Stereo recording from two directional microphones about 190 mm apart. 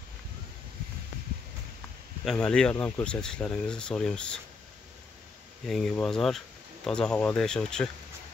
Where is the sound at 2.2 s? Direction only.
5° left (ahead or behind).